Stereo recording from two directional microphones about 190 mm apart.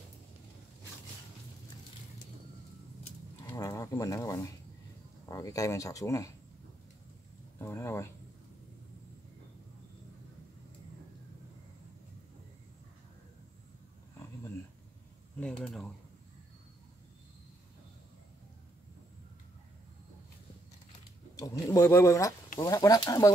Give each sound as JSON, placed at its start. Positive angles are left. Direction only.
{"t": 3.4, "sound": "a sound", "side_deg": 15}
{"t": 5.3, "sound": "speech", "side_deg": 15}
{"t": 7.5, "sound": "speech", "side_deg": 15}
{"t": 15.6, "sound": "speech", "side_deg": 5}
{"t": 21.4, "sound": "speech", "side_deg": 15}